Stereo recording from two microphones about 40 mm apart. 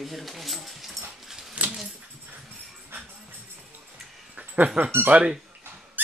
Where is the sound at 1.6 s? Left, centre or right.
Right.